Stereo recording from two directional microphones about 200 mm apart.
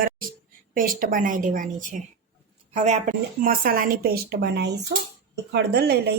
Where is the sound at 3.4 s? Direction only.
45° right (ahead or behind).